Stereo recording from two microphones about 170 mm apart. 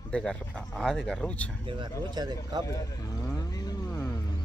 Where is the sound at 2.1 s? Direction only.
25° right (ahead or behind).